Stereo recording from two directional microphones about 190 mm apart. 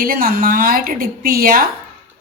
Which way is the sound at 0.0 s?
50° right (ahead or behind).